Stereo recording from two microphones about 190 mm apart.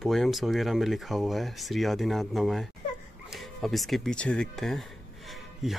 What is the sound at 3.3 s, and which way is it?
Music, centre (ahead or behind).